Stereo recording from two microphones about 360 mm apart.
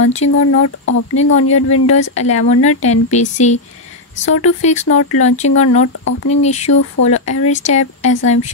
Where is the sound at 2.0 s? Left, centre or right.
Centre.